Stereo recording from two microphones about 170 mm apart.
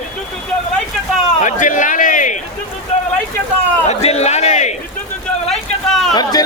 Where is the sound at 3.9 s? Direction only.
40° left (ahead or behind).